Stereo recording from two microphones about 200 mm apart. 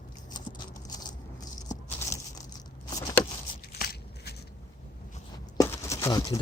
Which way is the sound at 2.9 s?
20° left (ahead or behind).